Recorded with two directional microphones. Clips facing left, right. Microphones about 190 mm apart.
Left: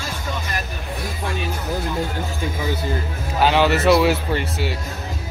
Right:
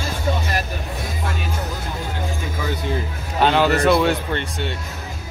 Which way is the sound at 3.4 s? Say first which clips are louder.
Even; 5° left (ahead or behind).